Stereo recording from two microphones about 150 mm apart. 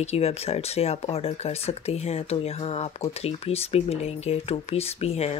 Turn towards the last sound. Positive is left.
turn(degrees=45)  # may be behind; listen again after turning